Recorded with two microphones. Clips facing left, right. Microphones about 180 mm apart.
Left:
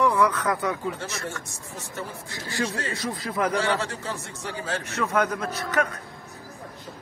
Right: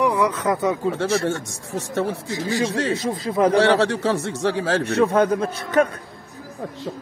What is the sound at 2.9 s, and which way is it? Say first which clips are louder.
Speech: right 7 dB; 25° right (ahead or behind).